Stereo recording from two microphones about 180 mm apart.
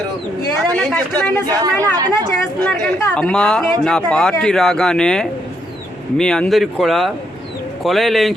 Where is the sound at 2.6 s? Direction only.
5° left (ahead or behind).